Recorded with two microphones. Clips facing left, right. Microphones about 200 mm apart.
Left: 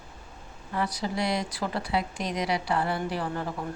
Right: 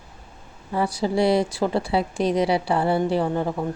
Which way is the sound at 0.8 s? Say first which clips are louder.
Right 11 dB; 30° right (ahead or behind).